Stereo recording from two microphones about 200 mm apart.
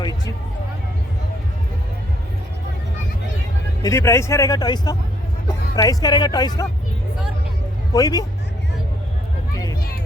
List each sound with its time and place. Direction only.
0.0 s a sound: 20° left (ahead or behind)
3.8 s speech: 15° left (ahead or behind)
7.9 s speech: 20° left (ahead or behind)